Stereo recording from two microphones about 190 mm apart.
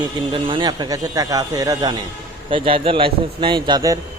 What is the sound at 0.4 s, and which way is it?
Speech, 25° right (ahead or behind).